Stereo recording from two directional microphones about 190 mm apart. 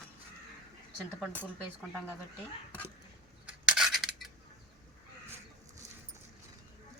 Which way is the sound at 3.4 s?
Centre (ahead or behind).